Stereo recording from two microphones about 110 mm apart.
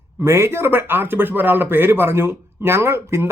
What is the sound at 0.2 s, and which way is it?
A man's voice, 25° right (ahead or behind).